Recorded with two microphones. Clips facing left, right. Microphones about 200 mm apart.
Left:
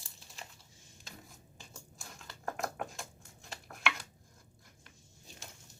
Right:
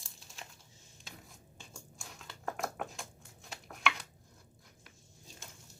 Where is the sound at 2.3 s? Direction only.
Centre (ahead or behind).